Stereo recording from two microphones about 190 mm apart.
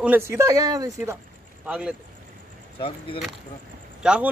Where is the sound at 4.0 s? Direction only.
5° right (ahead or behind).